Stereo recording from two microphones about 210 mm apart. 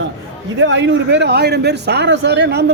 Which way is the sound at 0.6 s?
60° right (ahead or behind).